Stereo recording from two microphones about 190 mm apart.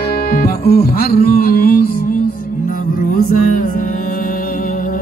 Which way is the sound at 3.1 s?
45° left (ahead or behind).